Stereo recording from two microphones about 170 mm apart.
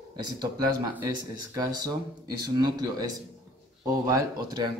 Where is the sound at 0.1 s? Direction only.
25° right (ahead or behind).